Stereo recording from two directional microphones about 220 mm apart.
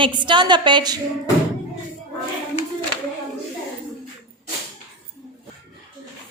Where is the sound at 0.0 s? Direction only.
20° right (ahead or behind).